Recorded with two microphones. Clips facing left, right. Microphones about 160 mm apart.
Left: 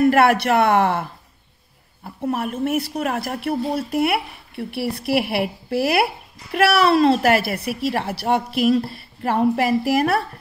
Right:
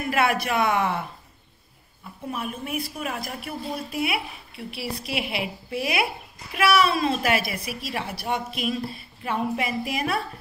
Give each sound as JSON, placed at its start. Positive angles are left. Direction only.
{"t": 0.0, "sound": "a woman's voice", "side_deg": 65}
{"t": 2.2, "sound": "a woman's voice", "side_deg": 70}